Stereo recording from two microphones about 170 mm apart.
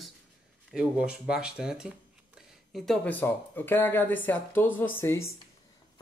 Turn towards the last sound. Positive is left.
turn(degrees=15)  # may be behind; listen again after turning